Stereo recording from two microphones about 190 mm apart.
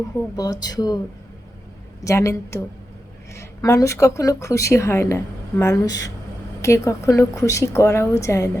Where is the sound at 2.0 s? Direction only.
15° left (ahead or behind).